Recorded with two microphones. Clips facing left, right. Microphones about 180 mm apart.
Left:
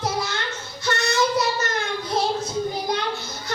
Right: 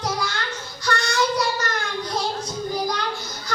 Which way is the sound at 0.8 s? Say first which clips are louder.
Left 1 dB; 25° left (ahead or behind).